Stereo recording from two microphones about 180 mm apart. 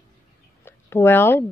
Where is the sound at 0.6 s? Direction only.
15° left (ahead or behind).